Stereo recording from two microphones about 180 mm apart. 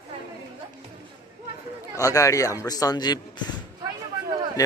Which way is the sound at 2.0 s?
20° left (ahead or behind).